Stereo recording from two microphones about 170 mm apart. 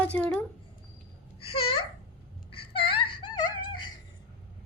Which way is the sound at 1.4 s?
35° left (ahead or behind).